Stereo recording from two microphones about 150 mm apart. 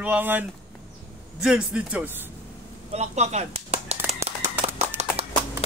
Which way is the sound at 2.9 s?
50° right (ahead or behind).